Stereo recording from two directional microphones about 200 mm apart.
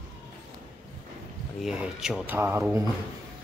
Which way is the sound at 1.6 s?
5° right (ahead or behind).